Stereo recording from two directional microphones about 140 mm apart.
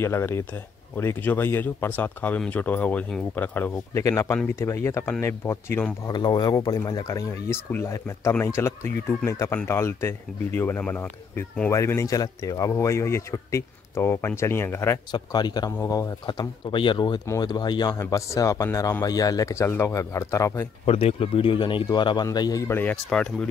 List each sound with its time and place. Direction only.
0.0 s speech: 15° left (ahead or behind)
6.0 s speech: 30° left (ahead or behind)
15.0 s a man's voice: 30° left (ahead or behind)
20.8 s a man's voice: 45° left (ahead or behind); by 23.5 s 5° left (ahead or behind)